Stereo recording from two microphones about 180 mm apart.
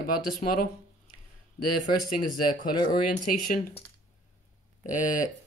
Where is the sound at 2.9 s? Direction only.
55° left (ahead or behind).